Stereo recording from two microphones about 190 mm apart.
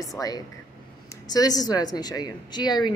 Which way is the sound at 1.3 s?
20° left (ahead or behind).